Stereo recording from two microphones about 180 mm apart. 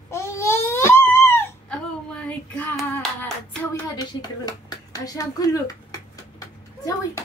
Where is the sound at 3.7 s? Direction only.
20° left (ahead or behind).